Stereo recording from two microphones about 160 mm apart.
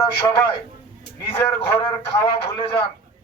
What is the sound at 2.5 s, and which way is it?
Speech, 30° left (ahead or behind).